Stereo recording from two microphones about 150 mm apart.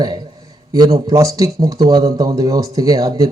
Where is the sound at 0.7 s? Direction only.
25° right (ahead or behind).